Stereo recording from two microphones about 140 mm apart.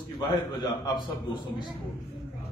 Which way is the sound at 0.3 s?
30° left (ahead or behind).